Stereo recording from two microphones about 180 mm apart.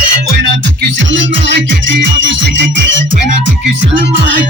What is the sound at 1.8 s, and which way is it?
Music, 90° right.